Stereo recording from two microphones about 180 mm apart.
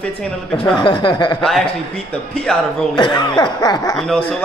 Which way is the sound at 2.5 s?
5° left (ahead or behind).